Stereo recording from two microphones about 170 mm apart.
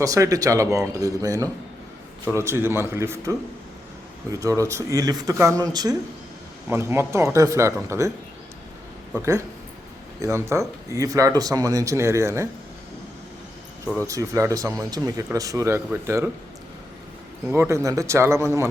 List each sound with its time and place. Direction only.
0.0 s speech: 20° right (ahead or behind)
10.2 s speech: 15° right (ahead or behind)
13.8 s speech: 10° left (ahead or behind)
14.1 s speech: 15° right (ahead or behind)
17.5 s speech: 15° right (ahead or behind)